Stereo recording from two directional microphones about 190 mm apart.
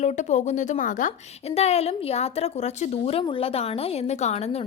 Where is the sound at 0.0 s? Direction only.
40° left (ahead or behind).